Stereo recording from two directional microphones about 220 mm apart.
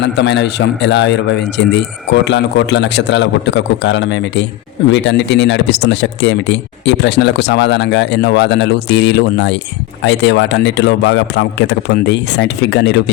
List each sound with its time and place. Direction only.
0.0 s speech: 50° left (ahead or behind)